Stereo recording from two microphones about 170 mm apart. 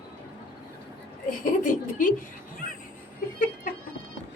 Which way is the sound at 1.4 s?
50° left (ahead or behind).